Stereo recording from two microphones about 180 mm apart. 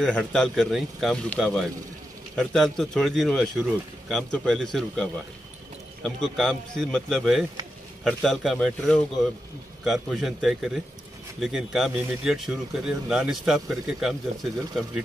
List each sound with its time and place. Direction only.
0.0 s speech: centre (ahead or behind)